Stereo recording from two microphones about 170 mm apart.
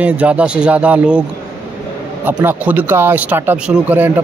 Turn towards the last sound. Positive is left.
turn(degrees=-10)  # may be behind; listen again after turning